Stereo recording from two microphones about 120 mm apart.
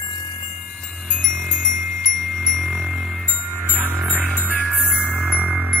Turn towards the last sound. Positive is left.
turn(degrees=-10)  # may be behind; listen again after turning